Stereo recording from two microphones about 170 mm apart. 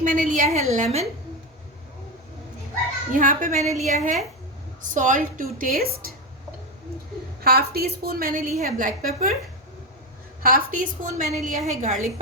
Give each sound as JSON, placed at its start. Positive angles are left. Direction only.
{"t": 0.0, "sound": "a woman's voice", "side_deg": -50}
{"t": 3.1, "sound": "a woman's voice", "side_deg": -50}
{"t": 7.4, "sound": "a woman's voice", "side_deg": -65}
{"t": 10.4, "sound": "a woman's voice", "side_deg": -55}